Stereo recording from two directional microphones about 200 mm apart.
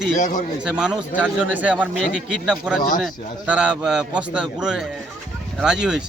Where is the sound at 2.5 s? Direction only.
5° right (ahead or behind).